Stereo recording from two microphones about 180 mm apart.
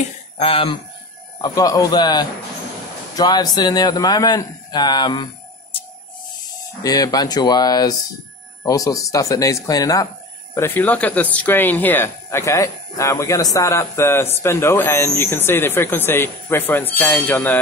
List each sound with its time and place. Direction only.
0.4 s speech: 30° left (ahead or behind)
1.4 s a man's voice: 20° left (ahead or behind)
6.8 s speech: 20° left (ahead or behind)